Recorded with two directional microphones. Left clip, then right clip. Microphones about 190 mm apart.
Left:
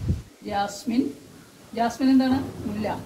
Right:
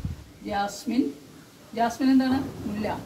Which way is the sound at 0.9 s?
15° left (ahead or behind).